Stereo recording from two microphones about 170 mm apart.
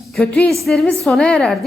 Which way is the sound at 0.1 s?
5° left (ahead or behind).